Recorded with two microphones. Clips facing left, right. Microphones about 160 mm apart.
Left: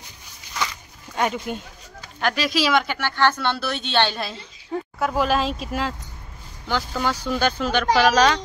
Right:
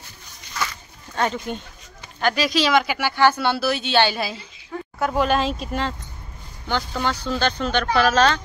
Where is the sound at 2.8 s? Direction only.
10° right (ahead or behind).